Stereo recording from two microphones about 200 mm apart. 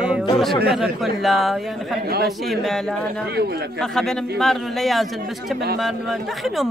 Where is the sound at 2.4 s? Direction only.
Centre (ahead or behind).